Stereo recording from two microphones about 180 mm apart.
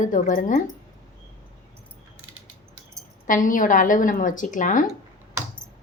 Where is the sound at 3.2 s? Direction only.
45° left (ahead or behind).